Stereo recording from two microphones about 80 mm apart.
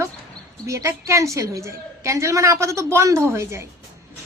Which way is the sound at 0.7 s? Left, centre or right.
Right.